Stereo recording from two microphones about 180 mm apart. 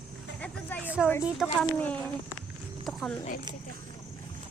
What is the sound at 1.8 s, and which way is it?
Speech, 10° left (ahead or behind).